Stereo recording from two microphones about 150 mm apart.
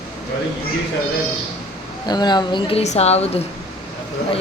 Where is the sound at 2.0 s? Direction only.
30° left (ahead or behind).